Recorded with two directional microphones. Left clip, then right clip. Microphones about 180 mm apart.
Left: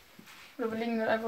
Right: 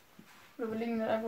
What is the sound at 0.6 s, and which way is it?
Speech, 30° left (ahead or behind).